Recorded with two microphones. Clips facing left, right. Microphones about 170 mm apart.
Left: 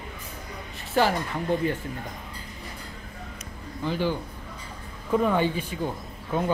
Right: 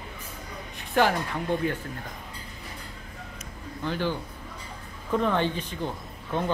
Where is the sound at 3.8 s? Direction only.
10° left (ahead or behind).